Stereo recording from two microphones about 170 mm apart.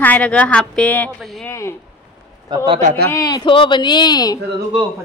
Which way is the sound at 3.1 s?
20° left (ahead or behind).